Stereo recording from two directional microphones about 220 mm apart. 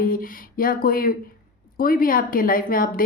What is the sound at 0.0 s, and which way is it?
A woman's voice, 40° left (ahead or behind).